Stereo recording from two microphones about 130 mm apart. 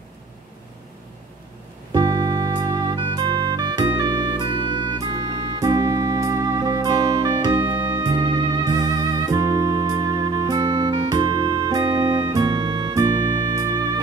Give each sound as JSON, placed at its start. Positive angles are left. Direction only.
{"t": 1.9, "sound": "music", "side_deg": -30}